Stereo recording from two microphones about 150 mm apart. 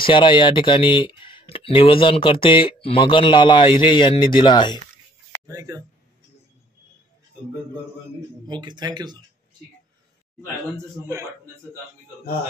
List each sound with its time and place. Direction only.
0.0 s speech: 35° left (ahead or behind)
5.5 s speech: 25° right (ahead or behind)
8.5 s speech: 30° right (ahead or behind)